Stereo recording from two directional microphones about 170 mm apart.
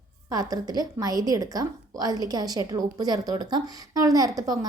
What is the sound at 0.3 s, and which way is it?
A woman's voice, 20° right (ahead or behind).